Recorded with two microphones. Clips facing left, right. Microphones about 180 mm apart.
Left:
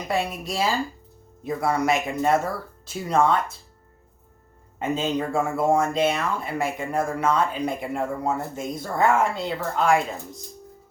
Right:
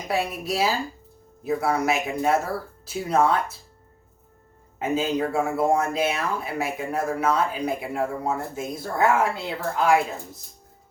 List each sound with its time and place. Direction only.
0.1 s speech: 5° right (ahead or behind)
4.8 s speech: 5° right (ahead or behind)